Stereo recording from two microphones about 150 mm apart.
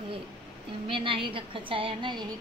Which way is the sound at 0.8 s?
35° right (ahead or behind).